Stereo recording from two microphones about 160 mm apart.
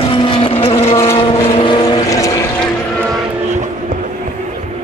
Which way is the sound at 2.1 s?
20° left (ahead or behind).